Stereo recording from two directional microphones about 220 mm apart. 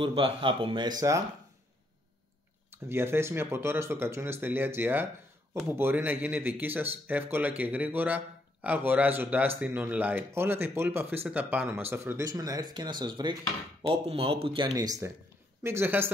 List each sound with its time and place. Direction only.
0.0 s speech: 25° right (ahead or behind)
2.7 s speech: 10° right (ahead or behind)